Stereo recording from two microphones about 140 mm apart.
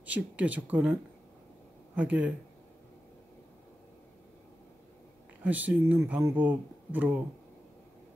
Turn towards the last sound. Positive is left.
turn(degrees=-10)  # may be behind; listen again after turning